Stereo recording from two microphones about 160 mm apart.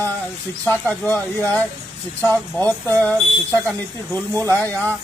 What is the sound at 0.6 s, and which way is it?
Speech, 10° left (ahead or behind).